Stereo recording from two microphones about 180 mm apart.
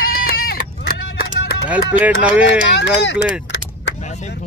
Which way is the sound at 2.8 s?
80° left.